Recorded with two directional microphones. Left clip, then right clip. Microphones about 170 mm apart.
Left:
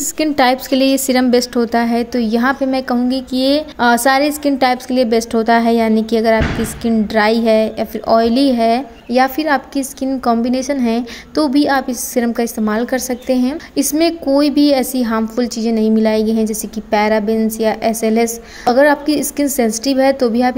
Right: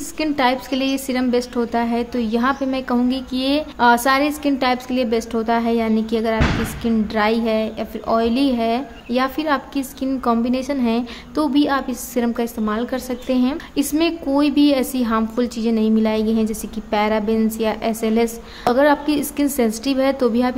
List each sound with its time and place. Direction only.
0.2 s a woman's voice: 30° left (ahead or behind); by 20.5 s 15° left (ahead or behind)